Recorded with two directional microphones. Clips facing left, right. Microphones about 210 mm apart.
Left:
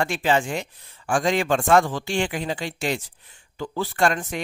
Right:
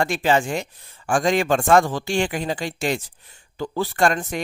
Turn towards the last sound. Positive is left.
turn(degrees=-40)  # may be behind; listen again after turning